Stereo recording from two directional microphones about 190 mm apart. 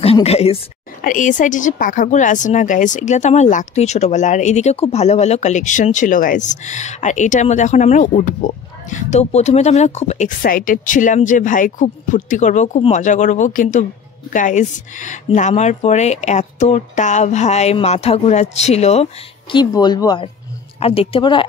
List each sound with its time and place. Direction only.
0.0 s a woman's voice: 30° left (ahead or behind)
1.0 s speech: 45° left (ahead or behind)
19.5 s speech: 20° left (ahead or behind)